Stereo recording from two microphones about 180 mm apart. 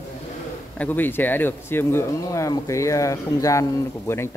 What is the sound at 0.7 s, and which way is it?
Speech, 10° left (ahead or behind).